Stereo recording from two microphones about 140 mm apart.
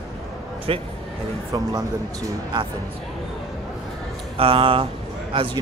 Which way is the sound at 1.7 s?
30° right (ahead or behind).